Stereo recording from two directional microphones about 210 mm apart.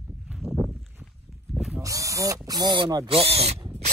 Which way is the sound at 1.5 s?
Centre (ahead or behind).